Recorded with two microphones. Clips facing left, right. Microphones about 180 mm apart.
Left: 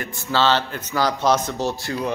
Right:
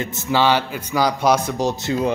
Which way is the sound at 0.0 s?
20° right (ahead or behind).